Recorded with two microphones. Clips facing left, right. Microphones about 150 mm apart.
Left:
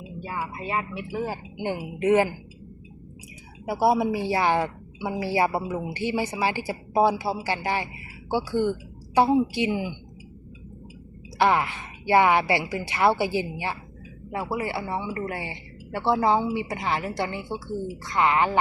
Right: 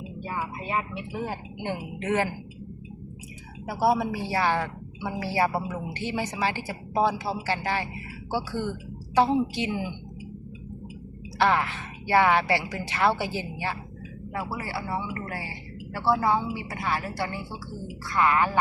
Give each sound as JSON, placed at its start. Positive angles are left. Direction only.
{"t": 0.3, "sound": "a woman's voice", "side_deg": 0}
{"t": 3.7, "sound": "a woman's voice", "side_deg": 15}
{"t": 11.3, "sound": "a woman's voice", "side_deg": 15}